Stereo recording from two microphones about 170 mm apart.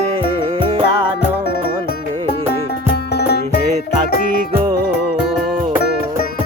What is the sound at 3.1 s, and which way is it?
Music, 70° left (ahead or behind).